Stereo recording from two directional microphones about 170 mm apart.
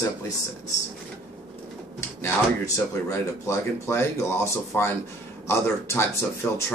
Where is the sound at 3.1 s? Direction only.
15° left (ahead or behind).